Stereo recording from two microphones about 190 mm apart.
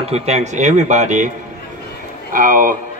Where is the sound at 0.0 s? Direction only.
35° right (ahead or behind).